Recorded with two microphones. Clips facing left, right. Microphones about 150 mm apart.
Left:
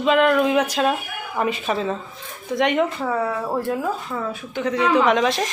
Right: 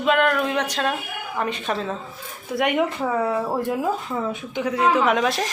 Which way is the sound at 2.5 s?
10° right (ahead or behind).